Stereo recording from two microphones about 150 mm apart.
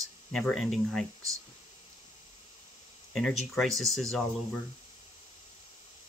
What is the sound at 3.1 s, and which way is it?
Speech, centre (ahead or behind).